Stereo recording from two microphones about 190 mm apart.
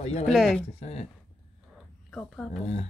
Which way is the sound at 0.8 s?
35° left (ahead or behind).